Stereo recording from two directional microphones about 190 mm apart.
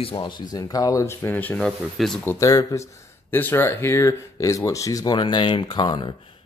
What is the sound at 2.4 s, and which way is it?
Speech, 15° left (ahead or behind).